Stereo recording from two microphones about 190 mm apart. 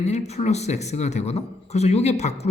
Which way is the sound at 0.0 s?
35° left (ahead or behind).